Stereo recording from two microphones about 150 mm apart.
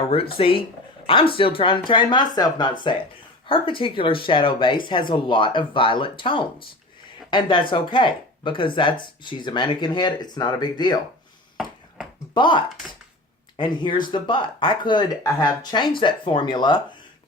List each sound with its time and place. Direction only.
0.1 s speech: 40° left (ahead or behind)
11.5 s a sound: 5° right (ahead or behind)
12.3 s speech: 30° left (ahead or behind)